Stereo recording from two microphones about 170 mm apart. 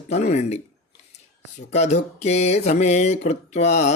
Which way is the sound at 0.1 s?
40° left (ahead or behind).